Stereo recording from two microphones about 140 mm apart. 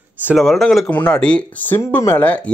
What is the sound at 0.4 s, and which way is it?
Speech, centre (ahead or behind).